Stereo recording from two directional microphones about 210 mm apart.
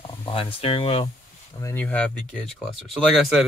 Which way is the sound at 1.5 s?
10° left (ahead or behind).